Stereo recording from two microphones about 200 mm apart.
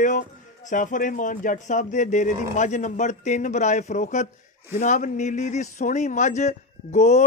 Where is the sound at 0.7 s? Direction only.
40° left (ahead or behind).